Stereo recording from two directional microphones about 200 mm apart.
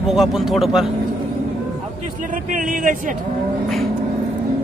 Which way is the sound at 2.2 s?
40° right (ahead or behind).